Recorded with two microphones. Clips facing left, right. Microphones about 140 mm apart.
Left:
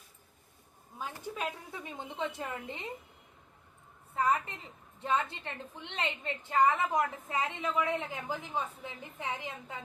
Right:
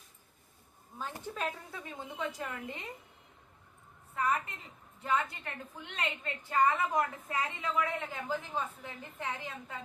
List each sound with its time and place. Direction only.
0.9 s a woman's voice: 10° left (ahead or behind)
4.1 s a woman's voice: 30° left (ahead or behind)